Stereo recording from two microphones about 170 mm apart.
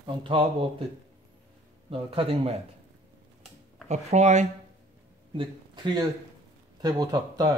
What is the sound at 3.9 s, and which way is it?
Speech, 40° right (ahead or behind).